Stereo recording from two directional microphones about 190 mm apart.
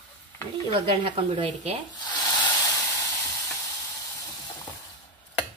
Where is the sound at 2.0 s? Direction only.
20° left (ahead or behind).